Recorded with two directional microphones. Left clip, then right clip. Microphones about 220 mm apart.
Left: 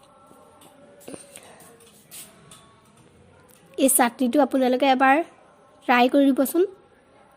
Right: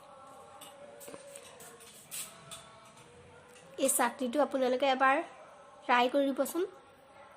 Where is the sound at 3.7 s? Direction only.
35° left (ahead or behind).